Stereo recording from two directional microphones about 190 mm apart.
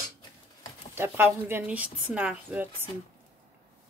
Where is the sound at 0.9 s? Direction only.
10° right (ahead or behind).